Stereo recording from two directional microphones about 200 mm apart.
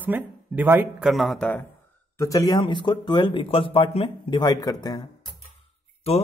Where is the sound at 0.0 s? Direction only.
10° right (ahead or behind); by 5.0 s 20° left (ahead or behind).